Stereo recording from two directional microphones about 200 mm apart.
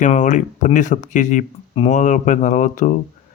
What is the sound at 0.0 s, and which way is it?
Speech, 40° left (ahead or behind).